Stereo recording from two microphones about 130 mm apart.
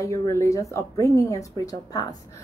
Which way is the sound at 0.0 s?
20° left (ahead or behind).